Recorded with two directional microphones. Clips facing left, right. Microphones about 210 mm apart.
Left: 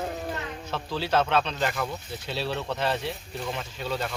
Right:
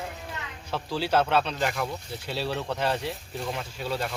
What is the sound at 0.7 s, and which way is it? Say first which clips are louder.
Speech: right 1 dB; 10° right (ahead or behind).